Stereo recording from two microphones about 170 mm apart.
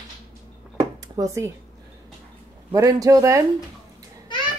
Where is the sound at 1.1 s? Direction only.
15° right (ahead or behind).